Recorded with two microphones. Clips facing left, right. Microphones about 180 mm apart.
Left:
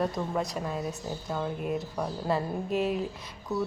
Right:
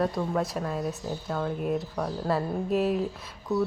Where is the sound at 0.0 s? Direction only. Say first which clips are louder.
Right 2 dB; centre (ahead or behind).